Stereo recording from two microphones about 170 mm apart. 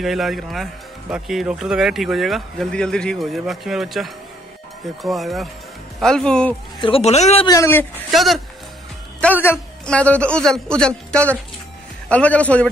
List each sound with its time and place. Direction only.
0.0 s speech: centre (ahead or behind)
6.8 s a man's voice: 35° left (ahead or behind)
7.4 s a man's voice: 20° left (ahead or behind)
8.1 s speech: centre (ahead or behind)
9.2 s a man's voice: 10° left (ahead or behind)